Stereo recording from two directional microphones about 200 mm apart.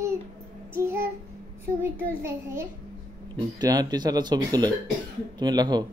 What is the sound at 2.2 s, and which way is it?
A child's voice, 15° right (ahead or behind).